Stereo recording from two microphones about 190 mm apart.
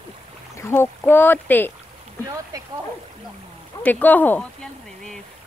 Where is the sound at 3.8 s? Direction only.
10° left (ahead or behind).